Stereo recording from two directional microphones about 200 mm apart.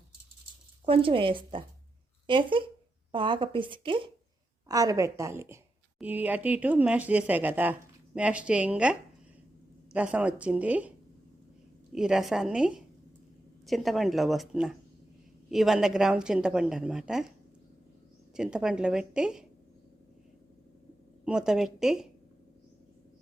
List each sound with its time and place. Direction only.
0.9 s a woman's voice: 25° right (ahead or behind); by 17.3 s centre (ahead or behind)
18.3 s a woman's voice: 5° right (ahead or behind)
21.2 s a woman's voice: 5° right (ahead or behind)